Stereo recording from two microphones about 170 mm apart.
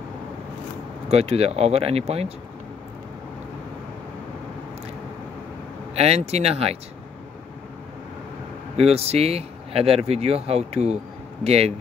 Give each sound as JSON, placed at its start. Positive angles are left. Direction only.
{"t": 1.0, "sound": "speech", "side_deg": -40}
{"t": 5.9, "sound": "speech", "side_deg": -35}
{"t": 8.7, "sound": "speech", "side_deg": -40}